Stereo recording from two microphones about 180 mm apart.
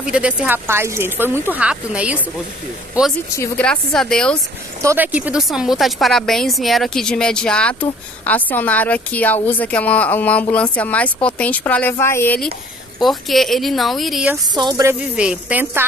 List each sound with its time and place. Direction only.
0.0 s speech: 5° right (ahead or behind)
3.3 s speech: 10° left (ahead or behind)
4.8 s a woman's voice: 10° right (ahead or behind); by 12.4 s 15° left (ahead or behind)
13.0 s speech: centre (ahead or behind)
14.5 s speech: 25° right (ahead or behind)
15.0 s speech: 5° right (ahead or behind)